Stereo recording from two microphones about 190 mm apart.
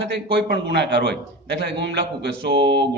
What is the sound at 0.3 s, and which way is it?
A man's voice, 60° right (ahead or behind).